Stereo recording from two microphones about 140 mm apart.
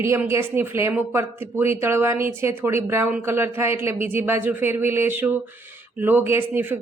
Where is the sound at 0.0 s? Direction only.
20° right (ahead or behind).